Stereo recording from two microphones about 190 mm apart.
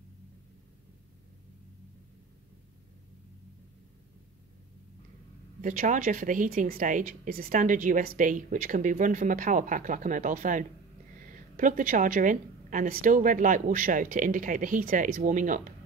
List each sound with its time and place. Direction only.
5.6 s a woman's voice: 45° right (ahead or behind)